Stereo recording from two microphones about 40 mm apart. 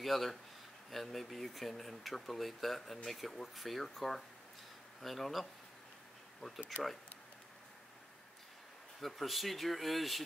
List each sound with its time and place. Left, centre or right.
0.0 s speech: centre
9.0 s speech: centre